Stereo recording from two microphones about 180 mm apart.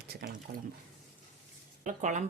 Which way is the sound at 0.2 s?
60° right (ahead or behind).